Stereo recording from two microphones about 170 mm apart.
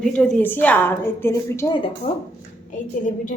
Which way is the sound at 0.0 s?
5° left (ahead or behind).